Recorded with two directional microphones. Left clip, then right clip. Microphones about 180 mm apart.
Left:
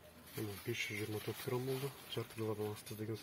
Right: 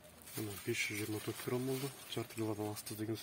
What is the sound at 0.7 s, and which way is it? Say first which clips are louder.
Speech: right 3 dB; 30° right (ahead or behind).